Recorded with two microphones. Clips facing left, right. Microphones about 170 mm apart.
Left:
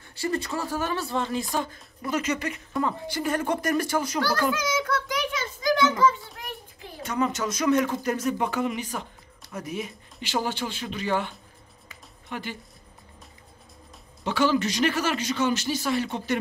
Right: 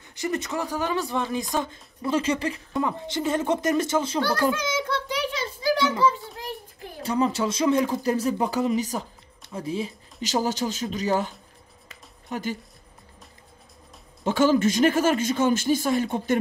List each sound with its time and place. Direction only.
0.1 s speech: 20° right (ahead or behind)
2.8 s speech: 20° right (ahead or behind)
4.4 s a sound: 25° right (ahead or behind)
7.0 s speech: 30° right (ahead or behind)
10.2 s speech: 40° right (ahead or behind)
14.2 s speech: 45° right (ahead or behind)